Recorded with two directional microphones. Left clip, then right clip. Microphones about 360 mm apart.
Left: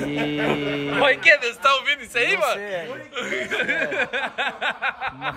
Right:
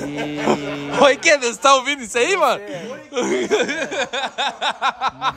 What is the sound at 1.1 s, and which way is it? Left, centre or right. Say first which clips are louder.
A man's voice: even; centre.